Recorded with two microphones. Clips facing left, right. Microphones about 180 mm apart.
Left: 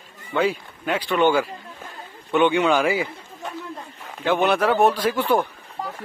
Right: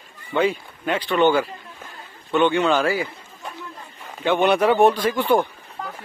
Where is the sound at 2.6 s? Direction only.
10° left (ahead or behind).